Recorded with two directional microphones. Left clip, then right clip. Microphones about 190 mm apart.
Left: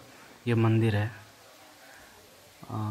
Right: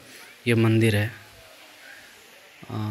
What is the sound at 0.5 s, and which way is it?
Speech, 10° right (ahead or behind).